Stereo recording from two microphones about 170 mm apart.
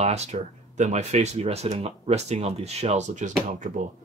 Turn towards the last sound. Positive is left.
turn(degrees=-45)  # may be behind; listen again after turning